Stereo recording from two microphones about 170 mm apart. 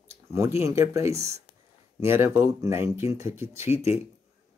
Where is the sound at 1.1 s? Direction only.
40° right (ahead or behind).